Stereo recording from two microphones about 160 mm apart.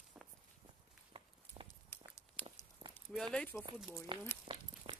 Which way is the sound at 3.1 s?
5° left (ahead or behind).